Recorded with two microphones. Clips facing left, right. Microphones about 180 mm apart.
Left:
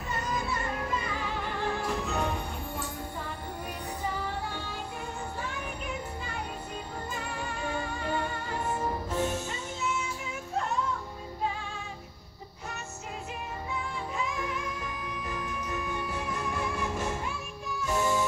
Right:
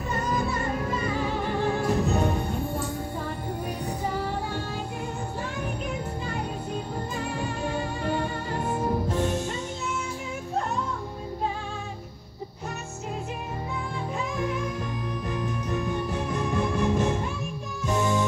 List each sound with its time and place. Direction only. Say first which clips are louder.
0.1 s music: right 5 dB; 50° right (ahead or behind)
8.6 s music: right 4 dB; 10° right (ahead or behind)
9.1 s music: right 3 dB; 5° left (ahead or behind)
15.3 s music: right 6 dB; 5° left (ahead or behind)